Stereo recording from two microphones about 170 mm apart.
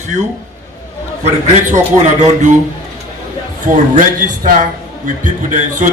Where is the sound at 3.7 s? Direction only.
55° right (ahead or behind).